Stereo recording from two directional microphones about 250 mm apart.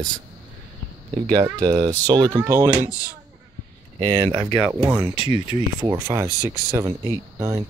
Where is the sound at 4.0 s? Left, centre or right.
Centre.